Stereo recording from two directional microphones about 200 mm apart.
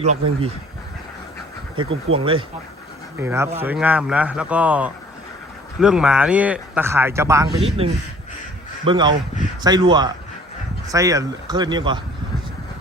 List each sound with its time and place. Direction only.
0.0 s speech: 35° right (ahead or behind)
1.7 s speech: 25° right (ahead or behind)
3.2 s speech: 10° right (ahead or behind)
7.8 s speech: 30° right (ahead or behind)